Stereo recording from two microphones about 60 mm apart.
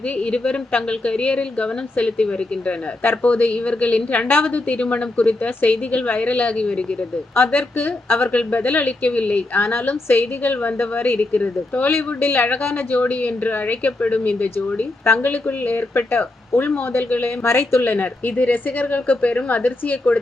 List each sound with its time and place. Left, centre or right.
0.2 s a woman's voice: centre
3.0 s a woman's voice: left
7.3 s a woman's voice: left
15.0 s speech: left
17.4 s speech: left
17.9 s a woman's voice: left